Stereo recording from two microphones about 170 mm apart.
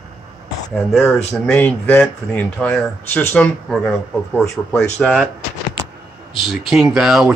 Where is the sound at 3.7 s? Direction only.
Centre (ahead or behind).